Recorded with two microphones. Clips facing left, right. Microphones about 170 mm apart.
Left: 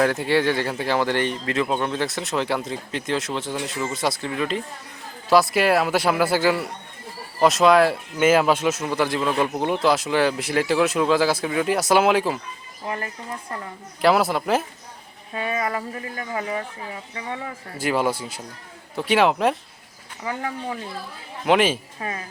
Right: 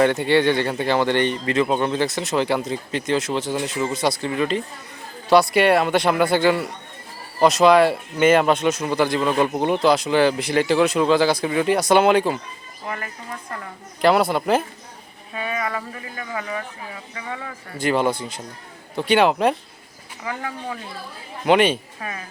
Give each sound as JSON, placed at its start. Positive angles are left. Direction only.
{"t": 0.0, "sound": "speech", "side_deg": 0}
{"t": 14.0, "sound": "speech", "side_deg": 0}
{"t": 15.4, "sound": "speech", "side_deg": 30}
{"t": 17.7, "sound": "speech", "side_deg": 5}
{"t": 20.2, "sound": "speech", "side_deg": 25}
{"t": 21.4, "sound": "speech", "side_deg": 0}